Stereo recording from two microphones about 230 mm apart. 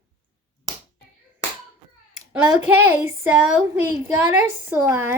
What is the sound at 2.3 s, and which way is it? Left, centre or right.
Speech, centre.